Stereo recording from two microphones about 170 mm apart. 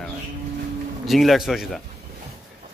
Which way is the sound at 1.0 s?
Centre (ahead or behind).